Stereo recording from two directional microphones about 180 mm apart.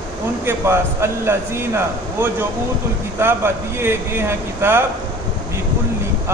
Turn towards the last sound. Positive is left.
turn(degrees=-15)  # may be behind; listen again after turning